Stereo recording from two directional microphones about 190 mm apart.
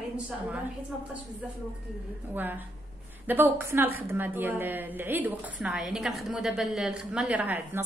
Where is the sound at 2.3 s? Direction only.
10° right (ahead or behind).